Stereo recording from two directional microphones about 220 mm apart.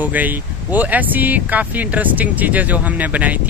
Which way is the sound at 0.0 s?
5° right (ahead or behind).